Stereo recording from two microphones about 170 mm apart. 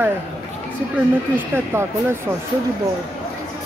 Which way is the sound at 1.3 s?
15° right (ahead or behind).